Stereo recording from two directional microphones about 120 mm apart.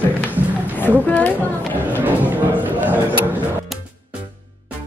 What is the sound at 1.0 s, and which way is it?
Speech, 15° left (ahead or behind).